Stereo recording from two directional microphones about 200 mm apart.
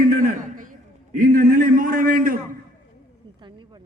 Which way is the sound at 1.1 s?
40° right (ahead or behind).